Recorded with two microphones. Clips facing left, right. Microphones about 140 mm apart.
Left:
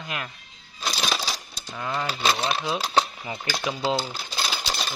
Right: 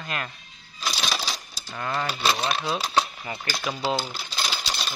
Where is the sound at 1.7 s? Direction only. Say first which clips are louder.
Even; 5° left (ahead or behind).